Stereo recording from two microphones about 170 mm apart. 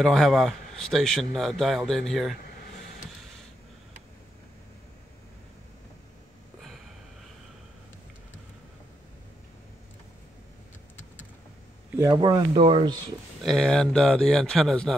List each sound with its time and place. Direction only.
0.0 s speech: centre (ahead or behind)
12.0 s speech: 20° right (ahead or behind)
13.4 s speech: centre (ahead or behind)